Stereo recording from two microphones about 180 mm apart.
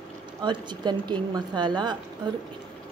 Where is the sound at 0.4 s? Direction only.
25° right (ahead or behind).